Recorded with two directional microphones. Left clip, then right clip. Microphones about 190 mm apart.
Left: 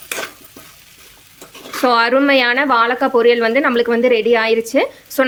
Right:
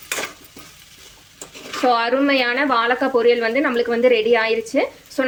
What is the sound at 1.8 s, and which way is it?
A woman's voice, 35° left (ahead or behind).